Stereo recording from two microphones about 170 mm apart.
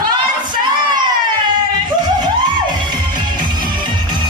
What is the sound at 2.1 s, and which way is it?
Music, 25° right (ahead or behind).